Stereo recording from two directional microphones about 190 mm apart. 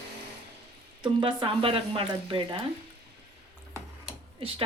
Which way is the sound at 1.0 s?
25° right (ahead or behind).